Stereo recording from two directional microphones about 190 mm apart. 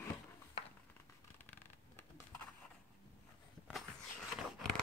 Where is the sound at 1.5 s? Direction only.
10° left (ahead or behind).